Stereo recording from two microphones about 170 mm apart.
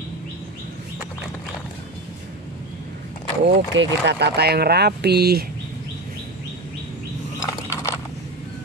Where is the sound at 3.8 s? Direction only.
90° right; by 5.4 s 70° right (ahead or behind).